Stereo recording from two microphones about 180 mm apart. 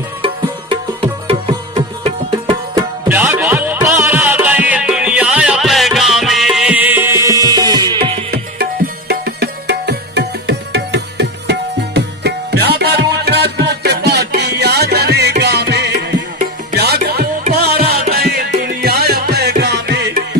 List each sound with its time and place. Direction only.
0.2 s music: 30° right (ahead or behind)
2.7 s music: 15° right (ahead or behind)
9.1 s music: 65° right (ahead or behind)